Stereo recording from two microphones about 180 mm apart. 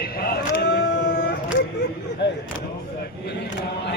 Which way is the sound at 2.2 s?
70° left (ahead or behind).